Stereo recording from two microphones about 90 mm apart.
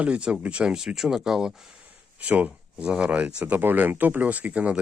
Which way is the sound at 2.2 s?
15° right (ahead or behind).